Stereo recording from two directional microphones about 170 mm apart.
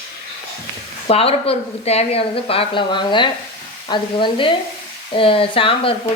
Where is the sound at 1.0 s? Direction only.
35° left (ahead or behind).